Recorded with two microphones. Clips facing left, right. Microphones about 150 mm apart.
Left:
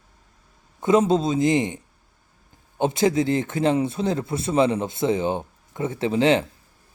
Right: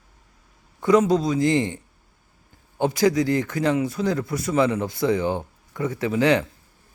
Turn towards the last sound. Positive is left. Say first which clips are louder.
# left 1 dB
turn(degrees=25)  # may be behind; listen again after turning